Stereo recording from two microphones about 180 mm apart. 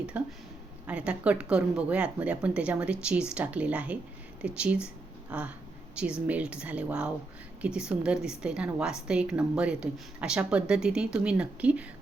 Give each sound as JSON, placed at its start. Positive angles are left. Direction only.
{"t": 0.1, "sound": "a woman's voice", "side_deg": -10}